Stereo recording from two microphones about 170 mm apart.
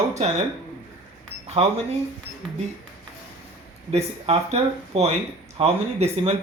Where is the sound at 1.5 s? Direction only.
40° right (ahead or behind).